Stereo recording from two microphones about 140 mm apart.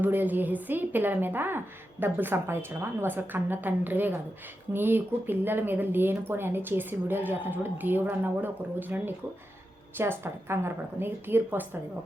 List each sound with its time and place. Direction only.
0.0 s speech: 15° right (ahead or behind)